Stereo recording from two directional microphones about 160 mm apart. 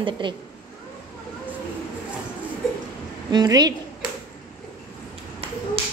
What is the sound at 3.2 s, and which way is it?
Speech, 25° right (ahead or behind).